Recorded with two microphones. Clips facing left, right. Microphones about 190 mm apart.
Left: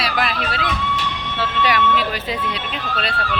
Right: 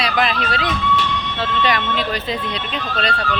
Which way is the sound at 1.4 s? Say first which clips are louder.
Left 1 dB; 10° left (ahead or behind).